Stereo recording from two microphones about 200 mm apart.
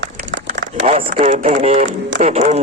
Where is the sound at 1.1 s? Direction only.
40° right (ahead or behind).